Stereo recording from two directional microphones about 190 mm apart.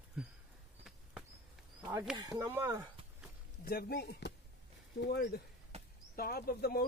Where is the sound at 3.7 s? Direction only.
55° left (ahead or behind).